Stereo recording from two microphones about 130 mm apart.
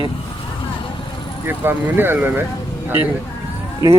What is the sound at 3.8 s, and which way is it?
Speech, 25° right (ahead or behind).